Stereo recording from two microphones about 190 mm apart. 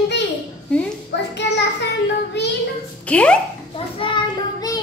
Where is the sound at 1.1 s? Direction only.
65° left (ahead or behind).